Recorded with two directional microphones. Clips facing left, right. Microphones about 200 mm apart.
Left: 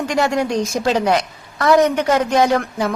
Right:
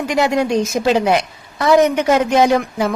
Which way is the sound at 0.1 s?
20° right (ahead or behind).